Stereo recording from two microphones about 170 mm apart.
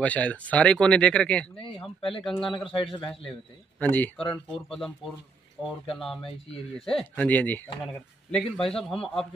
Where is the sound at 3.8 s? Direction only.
10° left (ahead or behind).